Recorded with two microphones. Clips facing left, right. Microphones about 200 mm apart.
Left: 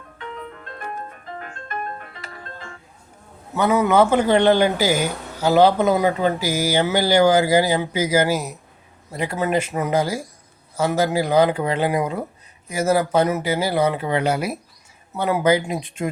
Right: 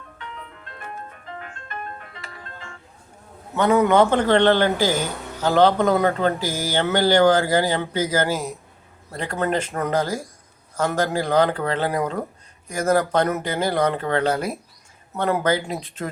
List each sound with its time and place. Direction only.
0.2 s music: 45° left (ahead or behind)
3.5 s a man's voice: 5° left (ahead or behind)